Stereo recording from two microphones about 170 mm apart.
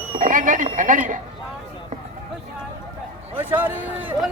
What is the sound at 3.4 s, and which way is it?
Speech, 10° right (ahead or behind).